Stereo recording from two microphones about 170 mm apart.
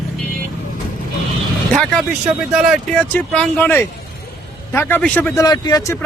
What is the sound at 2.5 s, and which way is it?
A man's voice, centre (ahead or behind).